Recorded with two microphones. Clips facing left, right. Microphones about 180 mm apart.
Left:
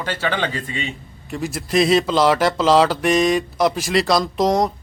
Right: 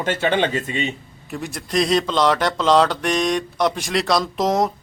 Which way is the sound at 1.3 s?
Centre (ahead or behind).